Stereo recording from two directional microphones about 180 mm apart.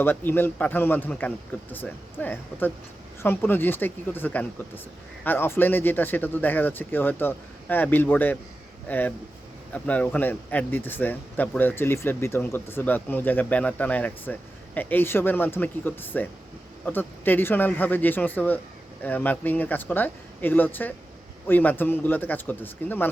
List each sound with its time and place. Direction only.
0.0 s speech: 10° left (ahead or behind)